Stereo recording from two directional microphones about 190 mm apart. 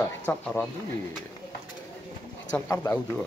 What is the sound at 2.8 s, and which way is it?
Speech, 10° left (ahead or behind).